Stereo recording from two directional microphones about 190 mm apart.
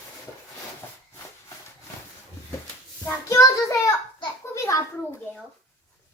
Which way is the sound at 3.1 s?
15° left (ahead or behind).